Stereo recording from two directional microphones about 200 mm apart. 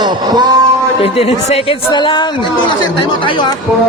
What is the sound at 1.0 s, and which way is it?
A woman's voice, 30° left (ahead or behind).